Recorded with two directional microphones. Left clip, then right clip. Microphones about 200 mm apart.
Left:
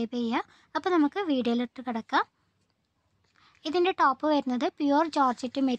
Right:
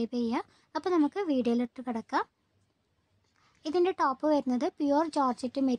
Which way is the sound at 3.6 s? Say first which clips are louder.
Left 3 dB; 15° left (ahead or behind).